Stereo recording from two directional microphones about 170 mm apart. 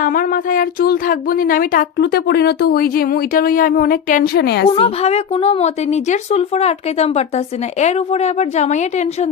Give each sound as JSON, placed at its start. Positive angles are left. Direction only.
{"t": 0.0, "sound": "speech", "side_deg": 55}
{"t": 4.7, "sound": "a woman's voice", "side_deg": 35}